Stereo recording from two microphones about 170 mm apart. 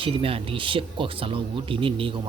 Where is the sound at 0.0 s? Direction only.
35° right (ahead or behind).